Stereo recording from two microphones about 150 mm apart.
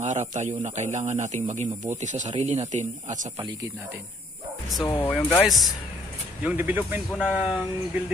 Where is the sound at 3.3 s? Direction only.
20° right (ahead or behind).